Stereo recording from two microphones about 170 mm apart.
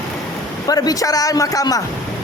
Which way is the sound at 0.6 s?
20° left (ahead or behind).